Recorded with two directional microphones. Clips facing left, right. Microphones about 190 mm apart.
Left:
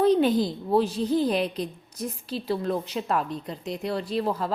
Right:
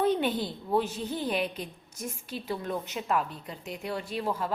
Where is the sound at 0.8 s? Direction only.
35° left (ahead or behind).